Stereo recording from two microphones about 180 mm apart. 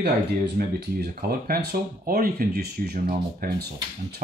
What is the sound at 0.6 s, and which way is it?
Speech, 60° right (ahead or behind).